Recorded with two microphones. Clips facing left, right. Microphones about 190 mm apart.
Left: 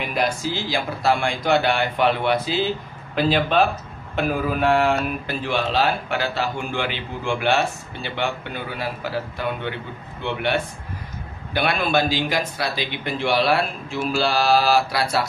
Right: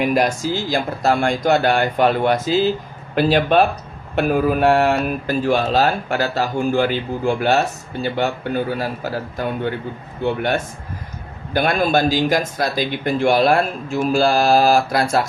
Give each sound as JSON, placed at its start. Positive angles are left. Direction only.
{"t": 0.0, "sound": "speech", "side_deg": -45}
{"t": 3.2, "sound": "speech", "side_deg": -55}